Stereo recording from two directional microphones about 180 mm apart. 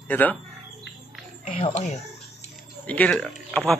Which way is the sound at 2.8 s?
10° left (ahead or behind).